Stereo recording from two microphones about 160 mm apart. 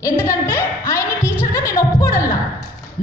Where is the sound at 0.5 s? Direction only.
20° left (ahead or behind).